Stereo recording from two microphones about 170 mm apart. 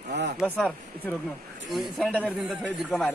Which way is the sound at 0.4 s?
5° left (ahead or behind).